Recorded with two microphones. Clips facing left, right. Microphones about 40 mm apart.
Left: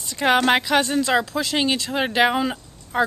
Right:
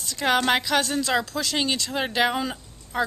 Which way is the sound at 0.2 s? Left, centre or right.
Centre.